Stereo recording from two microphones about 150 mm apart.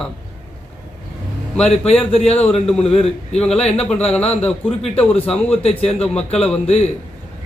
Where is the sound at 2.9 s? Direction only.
40° left (ahead or behind).